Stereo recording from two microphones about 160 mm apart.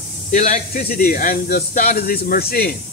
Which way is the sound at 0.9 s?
65° left (ahead or behind).